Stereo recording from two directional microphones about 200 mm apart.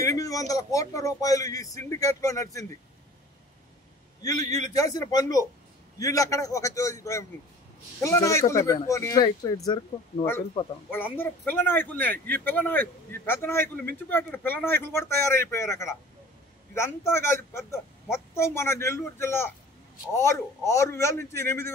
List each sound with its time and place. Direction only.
0.0 s a sound: 15° left (ahead or behind)
0.5 s a man's voice: 15° left (ahead or behind)
4.2 s a man's voice: 20° left (ahead or behind)
10.9 s a man's voice: 10° left (ahead or behind)